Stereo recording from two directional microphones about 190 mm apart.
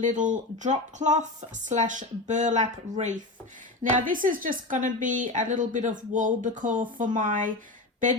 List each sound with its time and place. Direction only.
0.0 s a woman's voice: 40° right (ahead or behind)